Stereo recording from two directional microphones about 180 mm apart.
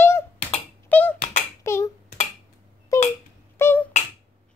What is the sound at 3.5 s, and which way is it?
Beatboxing, 15° left (ahead or behind).